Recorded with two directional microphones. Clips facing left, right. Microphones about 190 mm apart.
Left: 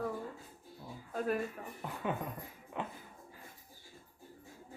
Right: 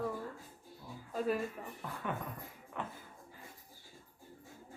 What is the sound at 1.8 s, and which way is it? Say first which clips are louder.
A woman's voice: left 3 dB; 20° left (ahead or behind).